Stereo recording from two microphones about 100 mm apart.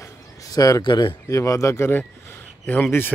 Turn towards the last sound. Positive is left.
turn(degrees=20)  # may be behind; listen again after turning